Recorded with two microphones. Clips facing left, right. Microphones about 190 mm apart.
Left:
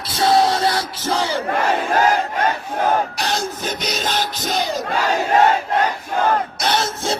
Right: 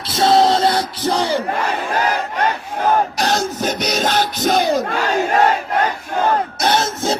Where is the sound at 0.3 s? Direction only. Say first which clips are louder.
Right 3 dB; 20° right (ahead or behind).